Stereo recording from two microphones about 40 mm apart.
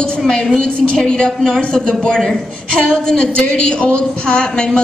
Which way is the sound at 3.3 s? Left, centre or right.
Left.